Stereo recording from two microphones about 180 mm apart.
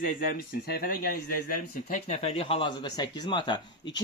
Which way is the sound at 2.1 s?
40° left (ahead or behind).